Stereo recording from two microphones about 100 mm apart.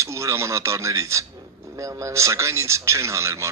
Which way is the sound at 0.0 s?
30° right (ahead or behind).